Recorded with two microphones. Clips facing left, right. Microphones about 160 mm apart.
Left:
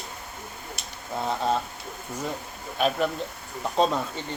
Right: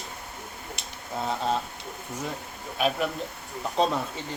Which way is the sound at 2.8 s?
Centre (ahead or behind).